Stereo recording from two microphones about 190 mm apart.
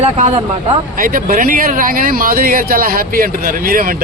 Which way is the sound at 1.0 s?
45° right (ahead or behind).